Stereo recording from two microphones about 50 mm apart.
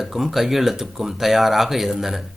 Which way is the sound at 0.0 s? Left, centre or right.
Centre.